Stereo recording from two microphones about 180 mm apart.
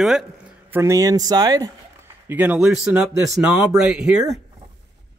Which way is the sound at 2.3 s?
10° right (ahead or behind).